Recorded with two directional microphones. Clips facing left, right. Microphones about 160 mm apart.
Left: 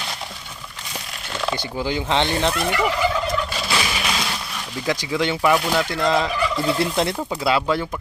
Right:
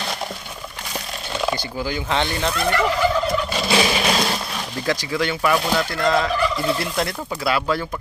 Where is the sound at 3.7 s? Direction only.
35° right (ahead or behind).